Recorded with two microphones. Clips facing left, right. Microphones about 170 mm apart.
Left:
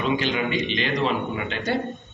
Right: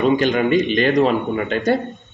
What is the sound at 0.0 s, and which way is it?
Speech, 50° right (ahead or behind).